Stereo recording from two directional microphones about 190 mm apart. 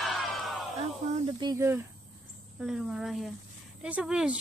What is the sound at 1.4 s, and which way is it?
Speech, 15° right (ahead or behind).